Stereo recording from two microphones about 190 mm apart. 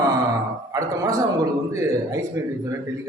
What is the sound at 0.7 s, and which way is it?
A man's voice, 15° right (ahead or behind).